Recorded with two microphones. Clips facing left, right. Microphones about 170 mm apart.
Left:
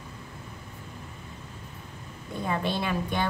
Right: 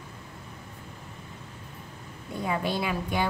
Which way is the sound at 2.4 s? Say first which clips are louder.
Even; 5° right (ahead or behind).